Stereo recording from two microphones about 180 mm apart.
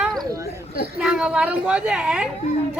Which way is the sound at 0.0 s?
Centre (ahead or behind).